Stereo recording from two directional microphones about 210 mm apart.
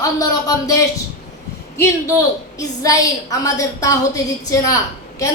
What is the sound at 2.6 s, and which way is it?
Speech, 15° left (ahead or behind).